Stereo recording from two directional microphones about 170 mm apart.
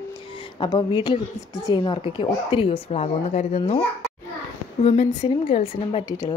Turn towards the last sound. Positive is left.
turn(degrees=35)  # may be behind; listen again after turning